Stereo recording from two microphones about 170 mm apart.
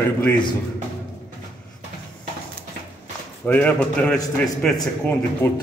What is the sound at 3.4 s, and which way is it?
A man's voice, 10° left (ahead or behind).